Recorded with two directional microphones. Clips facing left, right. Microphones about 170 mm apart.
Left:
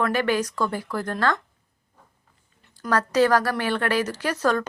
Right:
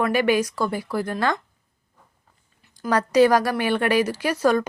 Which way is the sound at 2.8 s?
15° right (ahead or behind).